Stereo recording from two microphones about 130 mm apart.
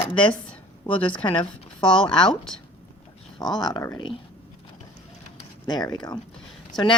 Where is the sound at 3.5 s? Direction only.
35° left (ahead or behind).